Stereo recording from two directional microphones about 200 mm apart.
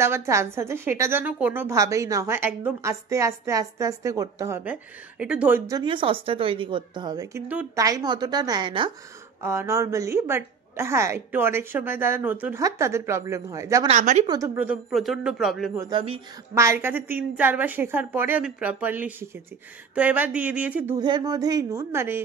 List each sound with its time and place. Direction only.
0.0 s a woman's voice: 15° right (ahead or behind)
5.7 s speech: 20° right (ahead or behind)
9.4 s a woman's voice: 15° right (ahead or behind)
13.8 s a woman's voice: 35° right (ahead or behind)
14.2 s speech: 15° right (ahead or behind)
15.8 s speech: 25° right (ahead or behind)
16.5 s a woman's voice: 15° right (ahead or behind)
21.0 s a woman's voice: 20° right (ahead or behind)